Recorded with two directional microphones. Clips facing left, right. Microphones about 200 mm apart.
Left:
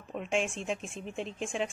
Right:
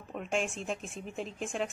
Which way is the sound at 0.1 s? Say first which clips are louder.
Left 2 dB; centre (ahead or behind).